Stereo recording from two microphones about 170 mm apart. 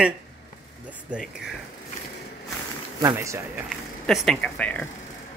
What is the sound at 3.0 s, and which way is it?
Speech, 20° right (ahead or behind).